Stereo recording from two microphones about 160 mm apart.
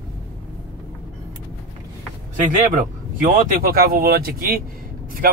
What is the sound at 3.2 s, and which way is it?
Speech, 65° right (ahead or behind).